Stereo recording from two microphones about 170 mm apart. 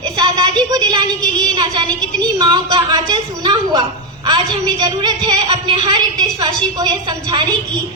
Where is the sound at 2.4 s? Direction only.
25° right (ahead or behind).